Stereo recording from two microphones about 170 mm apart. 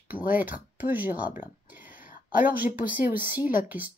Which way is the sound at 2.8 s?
10° right (ahead or behind).